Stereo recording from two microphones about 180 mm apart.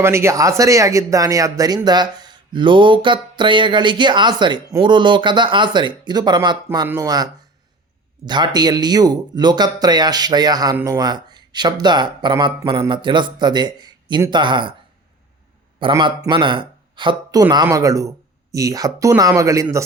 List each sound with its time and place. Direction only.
0.0 s speech: 15° right (ahead or behind)
15.8 s speech: 25° right (ahead or behind)